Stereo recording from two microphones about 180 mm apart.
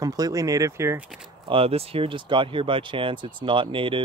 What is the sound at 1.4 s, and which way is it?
Speech, 30° right (ahead or behind).